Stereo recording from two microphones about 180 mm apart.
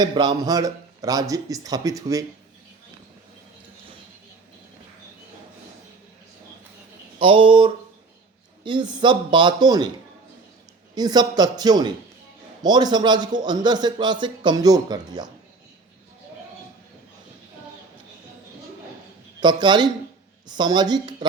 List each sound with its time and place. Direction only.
0.0 s a man's voice: 25° right (ahead or behind)
7.2 s a man's voice: 30° right (ahead or behind)
10.9 s a man's voice: 25° right (ahead or behind)
19.4 s a man's voice: 25° right (ahead or behind)